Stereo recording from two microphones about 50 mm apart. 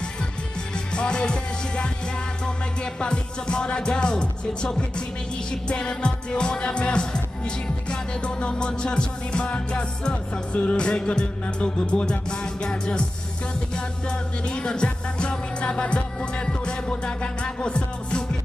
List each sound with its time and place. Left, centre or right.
0.9 s music: centre